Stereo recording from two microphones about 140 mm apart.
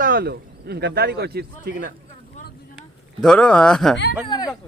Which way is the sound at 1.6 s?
75° right (ahead or behind).